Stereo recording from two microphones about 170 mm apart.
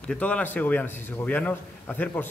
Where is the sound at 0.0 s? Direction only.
5° left (ahead or behind).